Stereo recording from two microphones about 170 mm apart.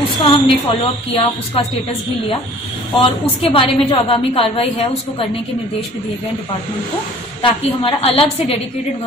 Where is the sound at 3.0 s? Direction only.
30° left (ahead or behind).